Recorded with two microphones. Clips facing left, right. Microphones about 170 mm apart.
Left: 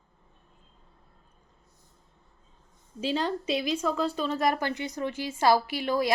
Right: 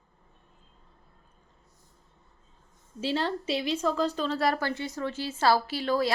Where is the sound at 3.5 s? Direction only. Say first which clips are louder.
Even; 30° right (ahead or behind).